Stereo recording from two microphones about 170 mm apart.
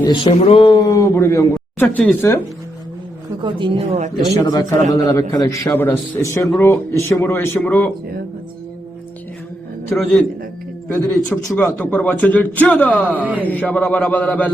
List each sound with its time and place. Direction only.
0.3 s speech: 35° left (ahead or behind); by 2.4 s 10° left (ahead or behind)
3.4 s a woman's voice: 30° right (ahead or behind)
4.4 s a man's voice: 20° left (ahead or behind)
9.9 s a man's voice: 5° left (ahead or behind)
13.2 s a man's voice: 10° right (ahead or behind)
13.5 s speech: 10° left (ahead or behind)